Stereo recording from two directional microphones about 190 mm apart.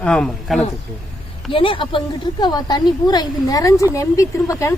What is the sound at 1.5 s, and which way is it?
A woman's voice, 25° left (ahead or behind).